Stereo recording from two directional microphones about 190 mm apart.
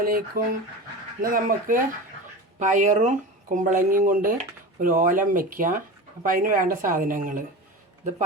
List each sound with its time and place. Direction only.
0.0 s speech: 50° right (ahead or behind)